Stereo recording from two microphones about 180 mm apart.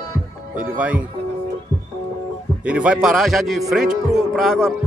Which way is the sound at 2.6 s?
5° right (ahead or behind).